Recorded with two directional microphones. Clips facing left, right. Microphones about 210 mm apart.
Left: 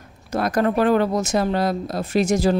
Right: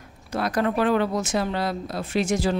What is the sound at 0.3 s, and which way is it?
Speech, 45° left (ahead or behind).